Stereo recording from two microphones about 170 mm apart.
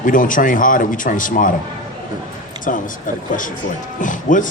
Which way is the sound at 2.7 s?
50° left (ahead or behind).